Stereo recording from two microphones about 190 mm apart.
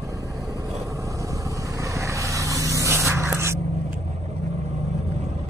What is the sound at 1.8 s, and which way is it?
Vehicle, 15° right (ahead or behind).